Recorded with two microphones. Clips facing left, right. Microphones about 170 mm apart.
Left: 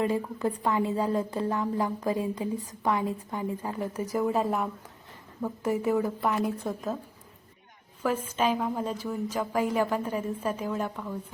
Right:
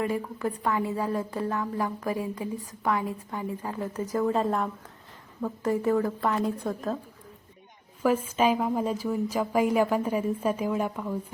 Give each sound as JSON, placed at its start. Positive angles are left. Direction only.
{"t": 0.3, "sound": "a woman's voice", "side_deg": 20}
{"t": 6.4, "sound": "a woman's voice", "side_deg": 0}
{"t": 8.0, "sound": "a woman's voice", "side_deg": -10}